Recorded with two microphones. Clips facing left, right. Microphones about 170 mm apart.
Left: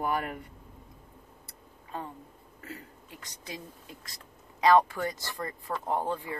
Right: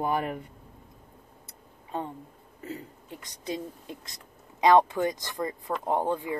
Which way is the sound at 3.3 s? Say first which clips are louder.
Right 9 dB; 20° right (ahead or behind).